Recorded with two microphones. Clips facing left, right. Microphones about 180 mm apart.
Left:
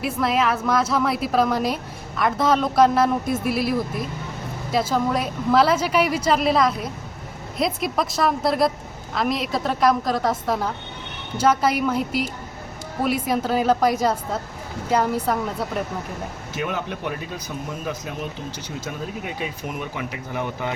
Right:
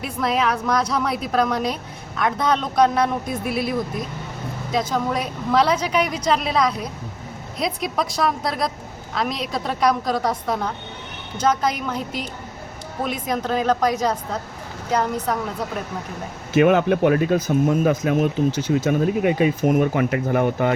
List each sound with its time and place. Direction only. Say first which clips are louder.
0.0 s a woman's voice: left 1 dB; centre (ahead or behind)
16.6 s speech: right 13 dB; 70° right (ahead or behind)
19.6 s speech: right 12 dB; 50° right (ahead or behind)